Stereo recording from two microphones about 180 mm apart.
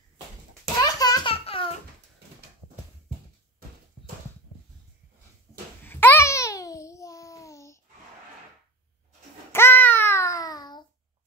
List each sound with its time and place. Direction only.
0.7 s a sound: 20° left (ahead or behind)
5.9 s babbling: 10° left (ahead or behind)
9.5 s babbling: 10° left (ahead or behind)